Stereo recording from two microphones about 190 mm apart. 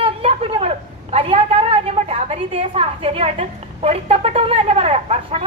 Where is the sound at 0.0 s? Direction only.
30° right (ahead or behind).